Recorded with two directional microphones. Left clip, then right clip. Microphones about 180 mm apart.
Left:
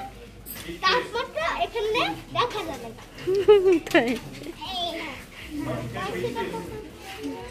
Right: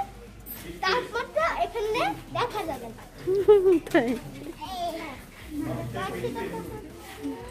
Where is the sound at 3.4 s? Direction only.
10° right (ahead or behind).